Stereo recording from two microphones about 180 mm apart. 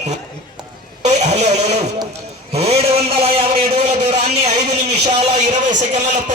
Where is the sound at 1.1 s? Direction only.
40° right (ahead or behind).